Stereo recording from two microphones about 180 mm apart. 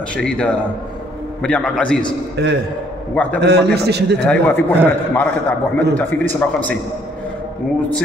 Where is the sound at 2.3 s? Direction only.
70° right (ahead or behind).